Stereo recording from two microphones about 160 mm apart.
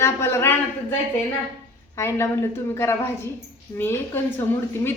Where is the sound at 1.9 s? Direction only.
15° left (ahead or behind).